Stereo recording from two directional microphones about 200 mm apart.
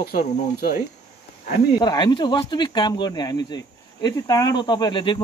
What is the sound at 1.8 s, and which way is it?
Speech, 20° left (ahead or behind).